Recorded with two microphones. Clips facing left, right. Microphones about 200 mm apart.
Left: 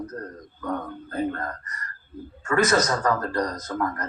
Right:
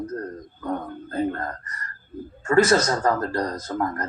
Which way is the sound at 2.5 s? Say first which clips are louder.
Right 3 dB; 30° right (ahead or behind).